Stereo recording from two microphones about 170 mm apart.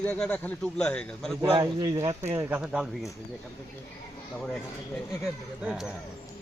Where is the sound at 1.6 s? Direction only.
25° right (ahead or behind).